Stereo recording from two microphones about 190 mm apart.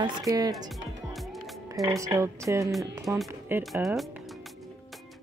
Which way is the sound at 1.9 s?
15° right (ahead or behind).